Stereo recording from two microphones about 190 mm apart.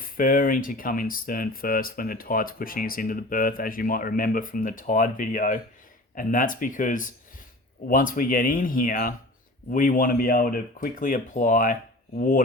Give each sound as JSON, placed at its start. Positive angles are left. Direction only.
{"t": 0.2, "sound": "speech", "side_deg": 45}